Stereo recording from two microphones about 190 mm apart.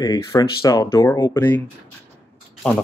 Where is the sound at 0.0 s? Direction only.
20° left (ahead or behind).